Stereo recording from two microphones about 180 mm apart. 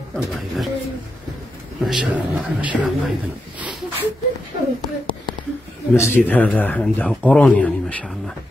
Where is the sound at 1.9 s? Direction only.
5° right (ahead or behind).